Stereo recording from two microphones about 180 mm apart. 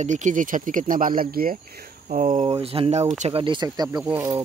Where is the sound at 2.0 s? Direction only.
45° right (ahead or behind).